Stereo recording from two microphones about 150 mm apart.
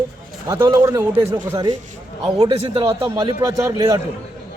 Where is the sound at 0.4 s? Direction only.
20° right (ahead or behind).